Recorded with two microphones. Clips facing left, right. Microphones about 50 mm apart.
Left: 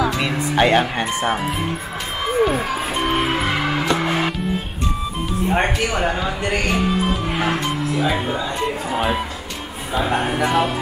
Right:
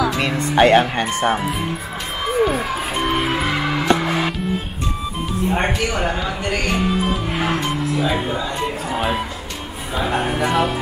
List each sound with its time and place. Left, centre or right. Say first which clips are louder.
0.1 s speech: right 1 dB; centre
2.2 s music: even; centre
5.7 s speech: even; centre
6.4 s speech: left 1 dB; centre
6.7 s speech: even; centre